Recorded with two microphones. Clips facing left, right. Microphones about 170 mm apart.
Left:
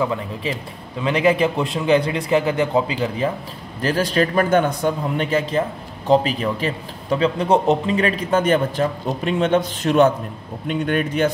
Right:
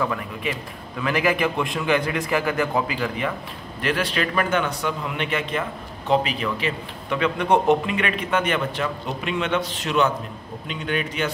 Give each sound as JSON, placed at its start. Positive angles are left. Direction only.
{"t": 0.0, "sound": "a man's voice", "side_deg": 25}
{"t": 3.8, "sound": "a man's voice", "side_deg": 40}